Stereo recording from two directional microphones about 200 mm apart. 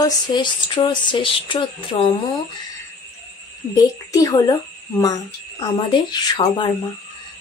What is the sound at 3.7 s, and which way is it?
A woman's voice, 15° left (ahead or behind).